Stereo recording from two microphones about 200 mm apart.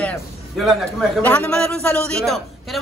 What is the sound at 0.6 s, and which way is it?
A man's voice, centre (ahead or behind).